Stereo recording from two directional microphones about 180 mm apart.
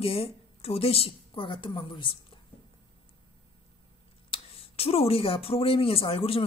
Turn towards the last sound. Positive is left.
turn(degrees=30)  # may be behind; listen again after turning